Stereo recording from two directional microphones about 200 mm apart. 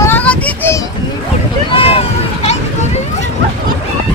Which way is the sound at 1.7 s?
30° left (ahead or behind).